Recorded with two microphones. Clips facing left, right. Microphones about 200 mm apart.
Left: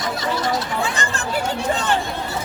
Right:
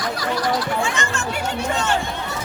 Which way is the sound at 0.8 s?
35° left (ahead or behind).